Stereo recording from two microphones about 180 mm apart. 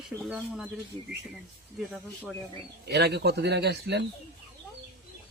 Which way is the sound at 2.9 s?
65° right (ahead or behind).